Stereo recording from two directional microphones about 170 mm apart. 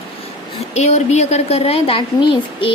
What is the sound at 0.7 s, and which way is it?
A woman's voice, 40° left (ahead or behind).